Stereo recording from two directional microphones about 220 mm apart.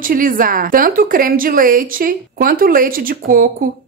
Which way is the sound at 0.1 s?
40° right (ahead or behind).